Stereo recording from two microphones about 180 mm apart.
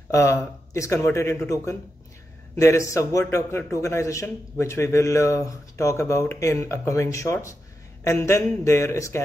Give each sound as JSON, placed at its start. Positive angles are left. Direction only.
{"t": 0.1, "sound": "a man's voice", "side_deg": 15}